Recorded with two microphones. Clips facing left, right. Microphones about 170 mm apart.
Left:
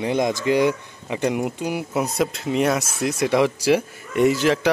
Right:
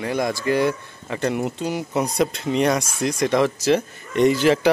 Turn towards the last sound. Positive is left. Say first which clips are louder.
# right 1 dB
turn(degrees=0)  # may be behind; listen again after turning